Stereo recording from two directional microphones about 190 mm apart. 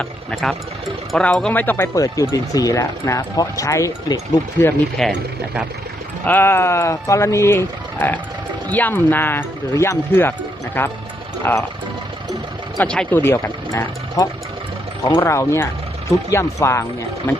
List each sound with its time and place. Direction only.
0.0 s speech: 5° left (ahead or behind)
4.6 s speech: centre (ahead or behind)
6.2 s speech: 10° left (ahead or behind)
12.7 s speech: 5° left (ahead or behind)